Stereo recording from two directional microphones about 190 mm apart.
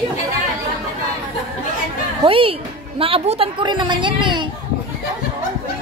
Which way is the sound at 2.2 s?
30° right (ahead or behind).